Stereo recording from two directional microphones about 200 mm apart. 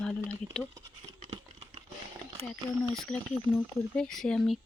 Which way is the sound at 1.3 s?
20° right (ahead or behind).